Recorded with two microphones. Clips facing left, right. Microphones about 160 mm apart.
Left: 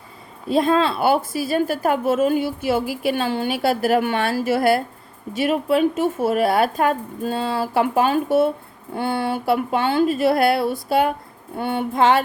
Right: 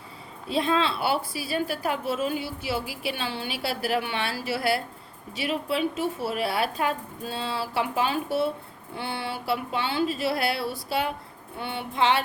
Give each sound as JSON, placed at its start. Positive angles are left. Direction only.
{"t": 0.4, "sound": "a woman's voice", "side_deg": 45}